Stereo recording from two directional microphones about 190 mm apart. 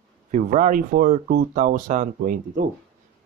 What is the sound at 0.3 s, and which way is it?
Speech, 45° right (ahead or behind).